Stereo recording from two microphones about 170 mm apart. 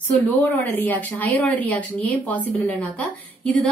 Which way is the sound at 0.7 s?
10° left (ahead or behind).